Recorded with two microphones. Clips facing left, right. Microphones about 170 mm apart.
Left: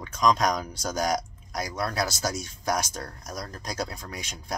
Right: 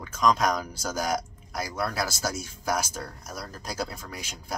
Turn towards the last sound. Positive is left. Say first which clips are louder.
# left 1 dB
turn(degrees=-5)  # may be behind; listen again after turning